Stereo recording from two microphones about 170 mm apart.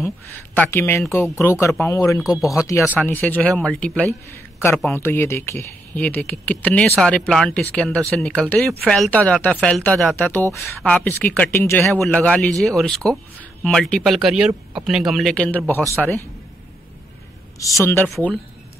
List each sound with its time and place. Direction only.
0.6 s speech: 15° left (ahead or behind)
10.1 s speech: 10° left (ahead or behind)
18.0 s speech: 5° left (ahead or behind)